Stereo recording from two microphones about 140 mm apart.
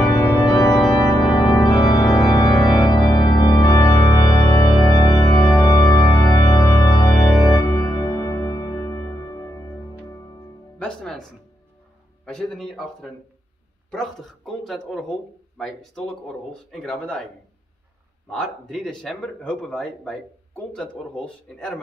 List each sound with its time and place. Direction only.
0.1 s organ: 25° left (ahead or behind)
7.5 s music: 25° left (ahead or behind)
10.8 s music: 5° left (ahead or behind)
12.3 s speech: 5° left (ahead or behind)
18.3 s speech: 5° left (ahead or behind)